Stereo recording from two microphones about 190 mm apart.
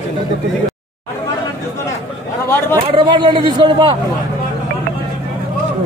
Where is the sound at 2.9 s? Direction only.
25° right (ahead or behind).